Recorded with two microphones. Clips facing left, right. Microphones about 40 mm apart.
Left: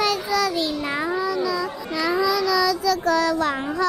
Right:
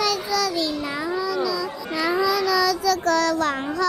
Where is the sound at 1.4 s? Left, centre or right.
Left.